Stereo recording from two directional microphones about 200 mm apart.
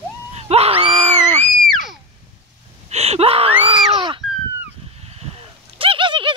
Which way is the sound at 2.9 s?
30° right (ahead or behind).